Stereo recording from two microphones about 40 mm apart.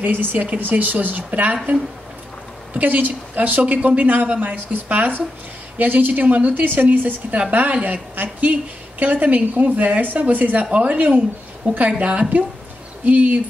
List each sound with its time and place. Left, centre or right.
0.0 s speech: right
10.6 s speech: right